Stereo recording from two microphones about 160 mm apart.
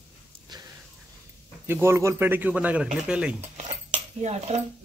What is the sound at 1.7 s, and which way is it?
Speech, 15° right (ahead or behind).